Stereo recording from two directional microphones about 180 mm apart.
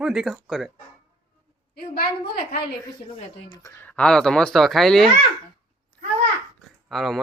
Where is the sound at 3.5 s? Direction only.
15° left (ahead or behind).